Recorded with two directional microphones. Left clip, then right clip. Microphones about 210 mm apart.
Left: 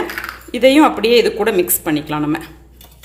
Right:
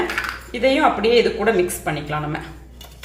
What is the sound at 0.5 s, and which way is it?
Speech, 50° left (ahead or behind).